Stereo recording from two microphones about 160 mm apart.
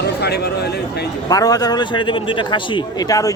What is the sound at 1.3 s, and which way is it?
A man's voice, 20° left (ahead or behind).